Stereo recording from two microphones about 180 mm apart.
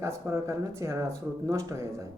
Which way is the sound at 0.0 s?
15° right (ahead or behind).